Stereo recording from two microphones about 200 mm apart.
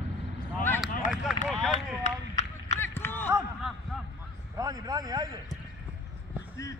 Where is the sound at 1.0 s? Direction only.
40° left (ahead or behind).